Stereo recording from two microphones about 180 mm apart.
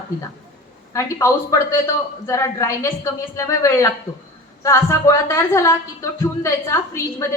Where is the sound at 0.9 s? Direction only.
15° left (ahead or behind).